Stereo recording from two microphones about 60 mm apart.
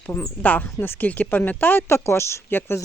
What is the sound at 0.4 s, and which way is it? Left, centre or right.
Speech, left.